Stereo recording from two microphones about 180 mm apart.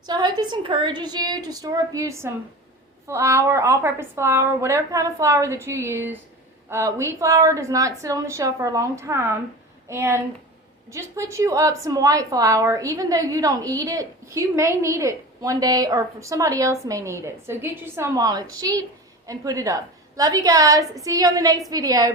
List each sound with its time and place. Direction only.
0.0 s a woman's voice: 25° right (ahead or behind)